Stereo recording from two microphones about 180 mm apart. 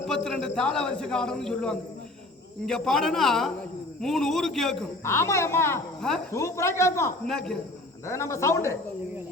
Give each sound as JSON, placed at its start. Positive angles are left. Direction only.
{"t": 0.3, "sound": "a man's voice", "side_deg": 5}
{"t": 5.0, "sound": "speech", "side_deg": 15}
{"t": 6.0, "sound": "speech", "side_deg": 5}
{"t": 6.3, "sound": "speech", "side_deg": 15}
{"t": 7.3, "sound": "a man's voice", "side_deg": 5}
{"t": 8.0, "sound": "speech", "side_deg": 15}